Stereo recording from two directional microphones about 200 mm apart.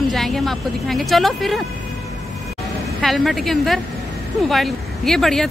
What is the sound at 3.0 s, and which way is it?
Speech, centre (ahead or behind).